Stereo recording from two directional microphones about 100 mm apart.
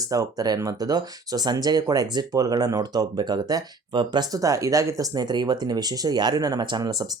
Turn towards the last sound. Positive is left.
turn(degrees=-45)  # may be behind; listen again after turning